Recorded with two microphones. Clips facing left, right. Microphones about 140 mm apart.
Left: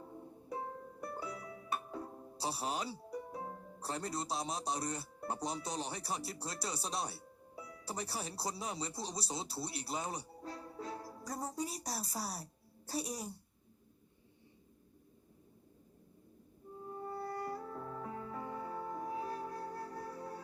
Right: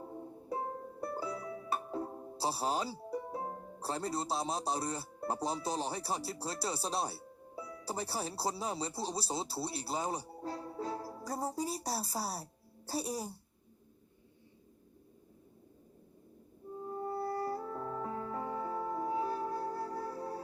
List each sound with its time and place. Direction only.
0.0 s music: 30° right (ahead or behind)
16.9 s music: 30° right (ahead or behind)